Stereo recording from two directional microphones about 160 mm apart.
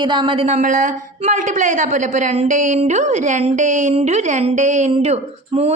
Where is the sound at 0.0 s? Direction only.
30° right (ahead or behind); by 4.9 s 50° right (ahead or behind).